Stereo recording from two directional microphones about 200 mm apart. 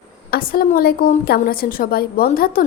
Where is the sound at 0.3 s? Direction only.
45° left (ahead or behind).